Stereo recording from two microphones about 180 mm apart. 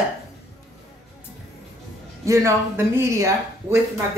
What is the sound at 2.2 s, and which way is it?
A woman's voice, 15° right (ahead or behind).